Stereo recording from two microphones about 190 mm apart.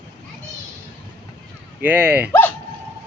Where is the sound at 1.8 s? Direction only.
10° right (ahead or behind).